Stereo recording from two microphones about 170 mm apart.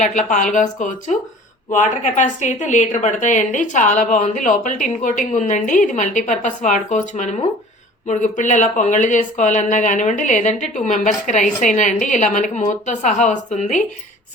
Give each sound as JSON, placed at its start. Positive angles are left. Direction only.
{"t": 0.0, "sound": "speech", "side_deg": 45}